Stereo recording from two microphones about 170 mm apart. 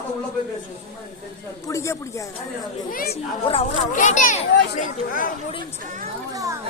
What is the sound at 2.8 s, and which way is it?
Speech, 55° left (ahead or behind).